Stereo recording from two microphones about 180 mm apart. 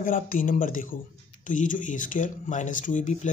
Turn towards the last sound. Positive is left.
turn(degrees=40)  # may be behind; listen again after turning